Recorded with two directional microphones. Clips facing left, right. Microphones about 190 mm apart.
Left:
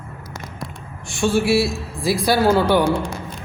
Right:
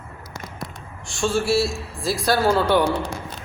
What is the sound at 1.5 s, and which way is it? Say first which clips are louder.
Speech: left 3 dB; 60° left (ahead or behind).